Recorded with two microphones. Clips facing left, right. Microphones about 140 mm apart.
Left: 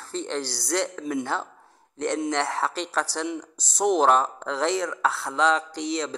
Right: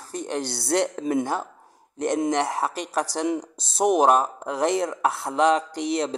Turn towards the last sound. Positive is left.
turn(degrees=-55)  # may be behind; listen again after turning